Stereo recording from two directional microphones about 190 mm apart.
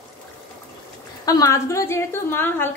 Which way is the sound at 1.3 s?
20° left (ahead or behind).